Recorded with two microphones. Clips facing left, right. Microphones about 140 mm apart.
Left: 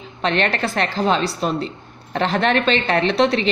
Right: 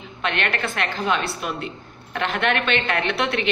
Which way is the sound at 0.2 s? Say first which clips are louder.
Left 5 dB; 35° left (ahead or behind).